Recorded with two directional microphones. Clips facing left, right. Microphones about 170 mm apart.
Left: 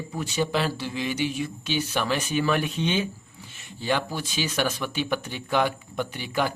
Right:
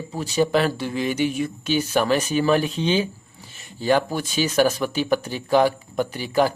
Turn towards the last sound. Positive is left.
turn(degrees=-35)  # may be behind; listen again after turning